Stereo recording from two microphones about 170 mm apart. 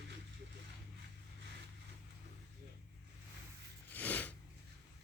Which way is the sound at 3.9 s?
10° left (ahead or behind).